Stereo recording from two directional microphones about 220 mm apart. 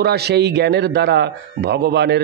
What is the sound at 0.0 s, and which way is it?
A man's voice, 45° right (ahead or behind).